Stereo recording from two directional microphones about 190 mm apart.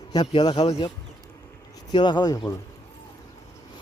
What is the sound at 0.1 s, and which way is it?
Speech, 20° left (ahead or behind).